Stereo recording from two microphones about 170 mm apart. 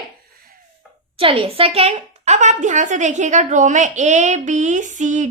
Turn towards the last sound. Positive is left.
turn(degrees=-45)  # may be behind; listen again after turning